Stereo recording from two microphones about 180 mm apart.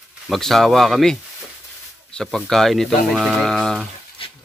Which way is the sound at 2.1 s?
Centre (ahead or behind).